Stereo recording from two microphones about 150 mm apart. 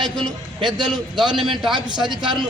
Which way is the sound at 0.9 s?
5° right (ahead or behind).